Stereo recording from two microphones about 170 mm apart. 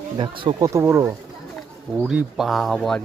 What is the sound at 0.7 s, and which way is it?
Speech, 15° right (ahead or behind).